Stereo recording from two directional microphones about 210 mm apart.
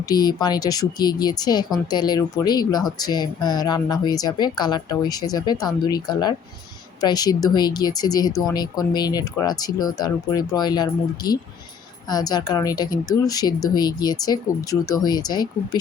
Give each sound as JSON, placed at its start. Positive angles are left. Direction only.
{"t": 0.1, "sound": "speech", "side_deg": 20}